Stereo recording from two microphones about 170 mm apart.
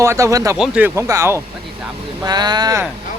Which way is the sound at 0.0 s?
15° right (ahead or behind).